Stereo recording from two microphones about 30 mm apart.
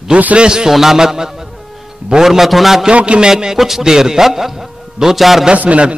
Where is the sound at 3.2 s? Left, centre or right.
Right.